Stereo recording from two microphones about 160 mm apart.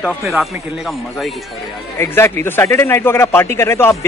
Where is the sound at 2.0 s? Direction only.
15° left (ahead or behind).